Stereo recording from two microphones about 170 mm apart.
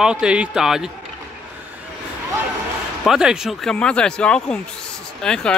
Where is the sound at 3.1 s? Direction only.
5° right (ahead or behind).